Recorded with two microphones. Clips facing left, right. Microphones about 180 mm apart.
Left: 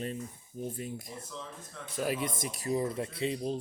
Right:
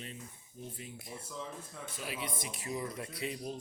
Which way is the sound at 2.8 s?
25° left (ahead or behind).